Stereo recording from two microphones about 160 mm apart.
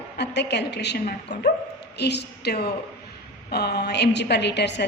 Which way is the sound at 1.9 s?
90° left.